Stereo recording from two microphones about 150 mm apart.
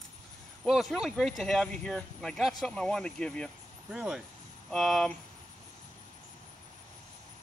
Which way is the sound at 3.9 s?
5° right (ahead or behind).